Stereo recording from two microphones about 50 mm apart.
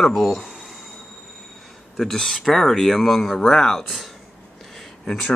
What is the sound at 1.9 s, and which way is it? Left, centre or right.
Speech, centre.